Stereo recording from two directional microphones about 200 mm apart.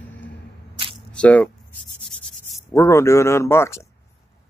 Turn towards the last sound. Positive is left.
turn(degrees=15)  # may be behind; listen again after turning